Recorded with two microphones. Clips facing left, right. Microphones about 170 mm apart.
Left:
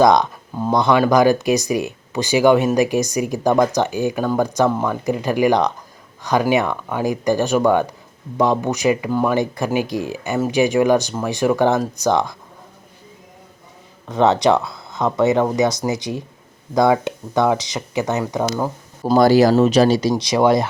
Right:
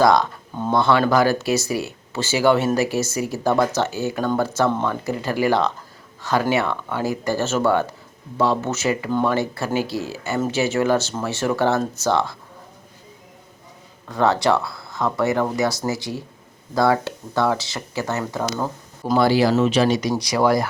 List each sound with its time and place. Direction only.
0.0 s speech: 20° left (ahead or behind)
14.1 s speech: 20° left (ahead or behind)
19.0 s speech: 40° left (ahead or behind); by 20.7 s 20° left (ahead or behind)